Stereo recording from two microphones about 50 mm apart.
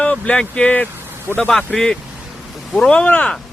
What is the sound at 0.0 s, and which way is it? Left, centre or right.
Speech, left.